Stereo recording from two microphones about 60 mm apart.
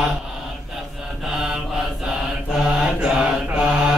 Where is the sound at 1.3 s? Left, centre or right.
Centre.